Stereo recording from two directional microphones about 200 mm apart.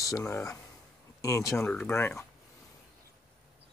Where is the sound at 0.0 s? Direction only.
15° left (ahead or behind).